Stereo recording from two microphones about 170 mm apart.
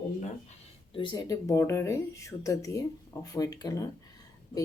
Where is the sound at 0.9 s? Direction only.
30° left (ahead or behind).